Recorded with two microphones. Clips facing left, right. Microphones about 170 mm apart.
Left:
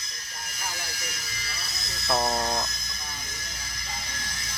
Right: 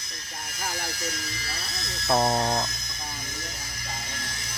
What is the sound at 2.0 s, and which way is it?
Speech, 15° right (ahead or behind).